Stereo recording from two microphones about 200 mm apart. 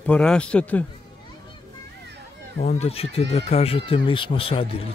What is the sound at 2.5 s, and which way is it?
Speech, 35° left (ahead or behind).